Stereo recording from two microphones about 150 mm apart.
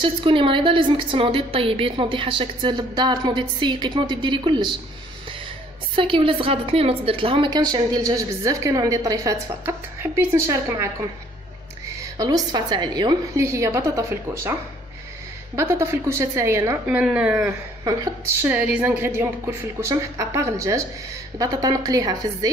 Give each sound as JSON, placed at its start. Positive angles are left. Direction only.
{"t": 0.0, "sound": "a woman's voice", "side_deg": -35}
{"t": 5.9, "sound": "a woman's voice", "side_deg": -35}
{"t": 16.8, "sound": "a woman's voice", "side_deg": -5}